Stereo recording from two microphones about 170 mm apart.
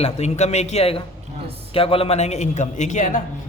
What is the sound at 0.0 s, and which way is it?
A man's voice, 40° left (ahead or behind).